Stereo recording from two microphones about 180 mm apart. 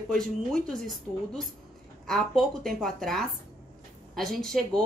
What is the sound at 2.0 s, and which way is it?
Speech, centre (ahead or behind).